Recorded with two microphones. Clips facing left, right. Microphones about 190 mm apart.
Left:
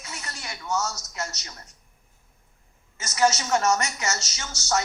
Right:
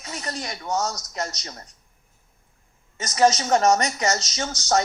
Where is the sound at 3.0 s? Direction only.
35° right (ahead or behind).